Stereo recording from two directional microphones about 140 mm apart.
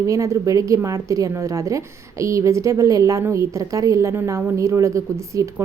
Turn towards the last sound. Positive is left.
turn(degrees=-20)  # may be behind; listen again after turning